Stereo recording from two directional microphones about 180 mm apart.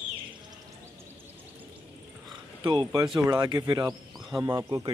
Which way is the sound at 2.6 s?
20° right (ahead or behind).